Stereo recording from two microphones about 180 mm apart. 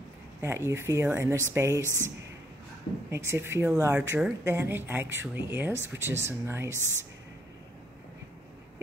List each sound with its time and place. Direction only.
0.4 s speech: 15° right (ahead or behind)